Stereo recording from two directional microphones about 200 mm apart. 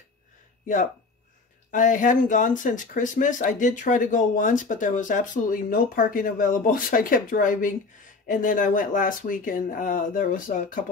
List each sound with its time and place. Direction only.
1.7 s speech: 40° left (ahead or behind)